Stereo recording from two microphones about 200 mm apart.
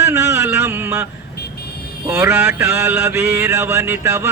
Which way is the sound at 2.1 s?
10° right (ahead or behind).